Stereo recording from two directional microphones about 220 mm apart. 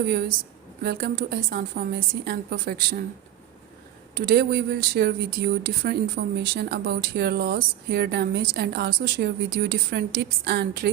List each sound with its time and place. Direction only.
0.1 s speech: 45° right (ahead or behind)
4.1 s speech: 45° right (ahead or behind)